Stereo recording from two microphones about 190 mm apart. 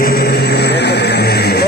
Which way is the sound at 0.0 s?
55° left (ahead or behind).